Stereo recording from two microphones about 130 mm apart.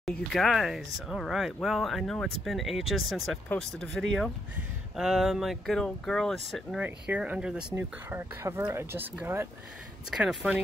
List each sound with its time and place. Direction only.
0.0 s speech: centre (ahead or behind)
7.7 s speech: 20° right (ahead or behind)
10.1 s speech: 5° right (ahead or behind)